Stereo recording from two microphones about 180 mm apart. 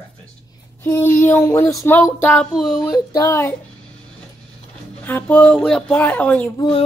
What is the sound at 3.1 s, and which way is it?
Speech, 15° left (ahead or behind).